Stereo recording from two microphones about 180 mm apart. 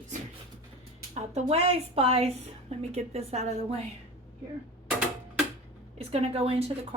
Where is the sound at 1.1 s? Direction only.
35° right (ahead or behind).